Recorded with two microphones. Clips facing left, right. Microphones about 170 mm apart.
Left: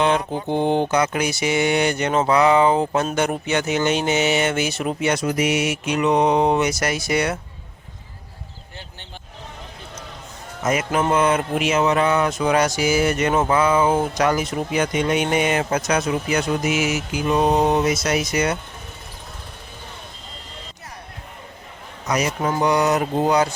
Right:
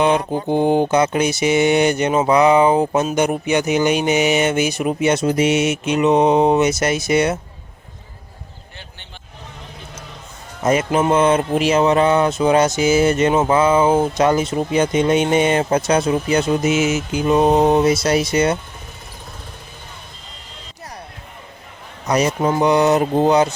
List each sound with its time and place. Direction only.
0.0 s mantra: 15° right (ahead or behind)
0.9 s speech: 25° right (ahead or behind)
10.6 s a man's voice: 30° right (ahead or behind)
22.0 s speech: 30° right (ahead or behind)